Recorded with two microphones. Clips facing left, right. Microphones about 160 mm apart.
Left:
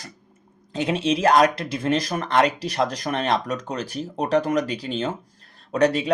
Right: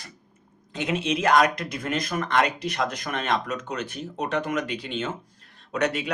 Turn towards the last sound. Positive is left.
turn(degrees=35)  # may be behind; listen again after turning